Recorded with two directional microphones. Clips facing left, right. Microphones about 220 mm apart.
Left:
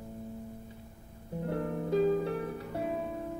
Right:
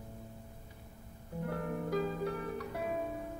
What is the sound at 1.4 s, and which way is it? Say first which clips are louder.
Music: left 4 dB; 25° left (ahead or behind).